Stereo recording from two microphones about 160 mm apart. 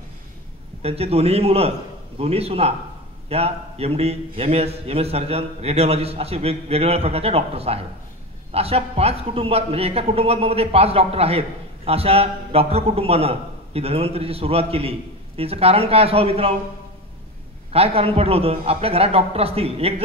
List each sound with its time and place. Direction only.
0.8 s a man's voice: 40° right (ahead or behind)
17.7 s a man's voice: 40° right (ahead or behind)